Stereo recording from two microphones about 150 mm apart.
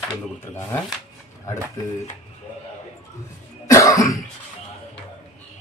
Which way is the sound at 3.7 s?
20° left (ahead or behind).